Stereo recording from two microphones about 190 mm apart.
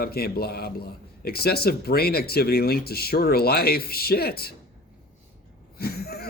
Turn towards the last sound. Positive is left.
turn(degrees=55)  # may be behind; listen again after turning